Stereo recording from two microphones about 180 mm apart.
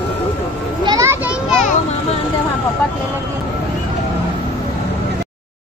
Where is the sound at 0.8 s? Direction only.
20° right (ahead or behind).